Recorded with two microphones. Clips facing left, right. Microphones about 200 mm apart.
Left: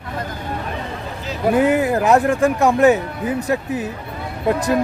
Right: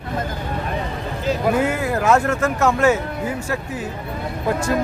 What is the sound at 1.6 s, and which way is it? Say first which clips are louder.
Speech: left 4 dB; 20° left (ahead or behind).